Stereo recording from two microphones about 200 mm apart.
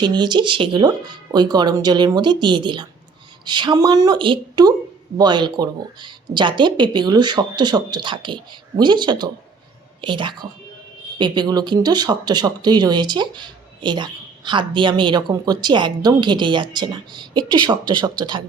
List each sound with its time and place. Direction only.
0.0 s speech: 20° right (ahead or behind)